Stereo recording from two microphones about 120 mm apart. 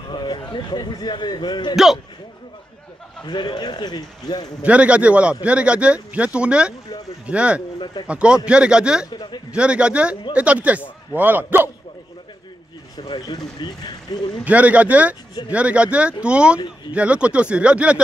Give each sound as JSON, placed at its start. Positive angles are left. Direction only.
{"t": 0.1, "sound": "a man's voice", "side_deg": 40}
{"t": 3.3, "sound": "a man's voice", "side_deg": 40}
{"t": 4.6, "sound": "speech", "side_deg": -10}
{"t": 7.8, "sound": "a man's voice", "side_deg": 40}
{"t": 8.1, "sound": "speech", "side_deg": -10}
{"t": 9.1, "sound": "speech", "side_deg": 40}
{"t": 9.5, "sound": "speech", "side_deg": -10}
{"t": 12.9, "sound": "a man's voice", "side_deg": 35}
{"t": 14.4, "sound": "speech", "side_deg": -10}